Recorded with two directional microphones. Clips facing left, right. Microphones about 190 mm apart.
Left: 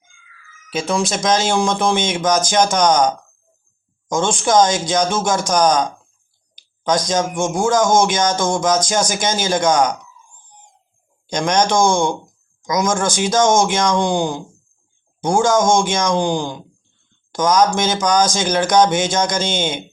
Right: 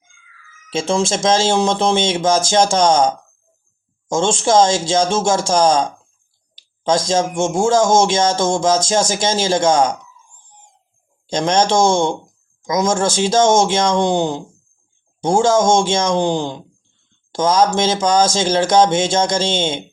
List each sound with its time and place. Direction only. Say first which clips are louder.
0.7 s speech: right 2 dB; 25° right (ahead or behind)
11.3 s speech: right 1 dB; 25° right (ahead or behind)